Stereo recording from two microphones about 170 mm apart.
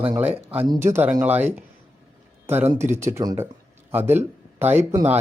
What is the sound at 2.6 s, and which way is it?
Speech, 45° right (ahead or behind).